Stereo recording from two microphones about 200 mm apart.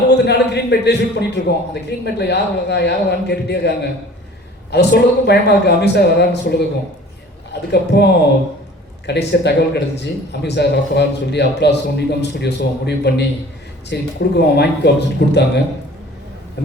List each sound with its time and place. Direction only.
0.1 s speech: 55° left (ahead or behind)
7.7 s speech: 55° left (ahead or behind)